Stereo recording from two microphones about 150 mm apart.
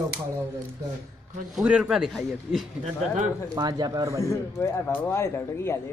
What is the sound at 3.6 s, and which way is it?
Speech, 25° right (ahead or behind).